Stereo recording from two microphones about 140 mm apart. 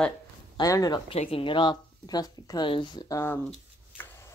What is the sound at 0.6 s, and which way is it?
Speech, 25° left (ahead or behind).